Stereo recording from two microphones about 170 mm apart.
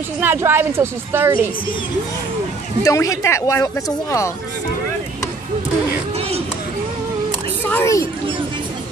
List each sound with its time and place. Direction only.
0.2 s a woman's voice: 15° right (ahead or behind)
2.8 s speech: 20° left (ahead or behind)
7.6 s a sound: 15° left (ahead or behind)